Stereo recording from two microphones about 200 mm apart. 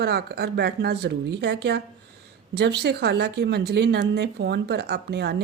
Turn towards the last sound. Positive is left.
turn(degrees=-55)  # may be behind; listen again after turning